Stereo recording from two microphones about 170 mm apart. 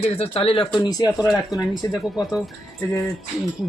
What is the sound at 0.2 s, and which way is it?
Speech, 35° left (ahead or behind).